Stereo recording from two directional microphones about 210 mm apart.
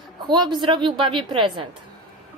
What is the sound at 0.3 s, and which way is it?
A woman's voice, 20° right (ahead or behind).